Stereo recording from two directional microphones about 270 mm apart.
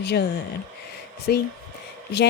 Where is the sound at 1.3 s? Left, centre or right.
Left.